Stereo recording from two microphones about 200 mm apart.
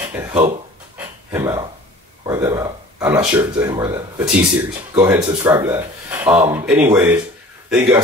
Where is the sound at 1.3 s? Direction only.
15° right (ahead or behind).